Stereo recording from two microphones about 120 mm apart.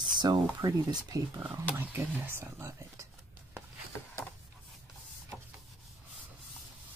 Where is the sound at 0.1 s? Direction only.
35° right (ahead or behind).